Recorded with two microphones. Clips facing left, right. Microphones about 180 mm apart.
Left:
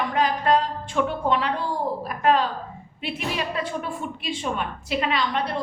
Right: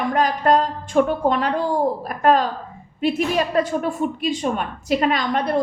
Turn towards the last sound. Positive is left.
turn(degrees=-45)  # may be behind; listen again after turning